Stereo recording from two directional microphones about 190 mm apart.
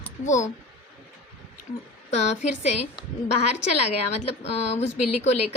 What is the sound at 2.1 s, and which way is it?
Speech, 35° left (ahead or behind).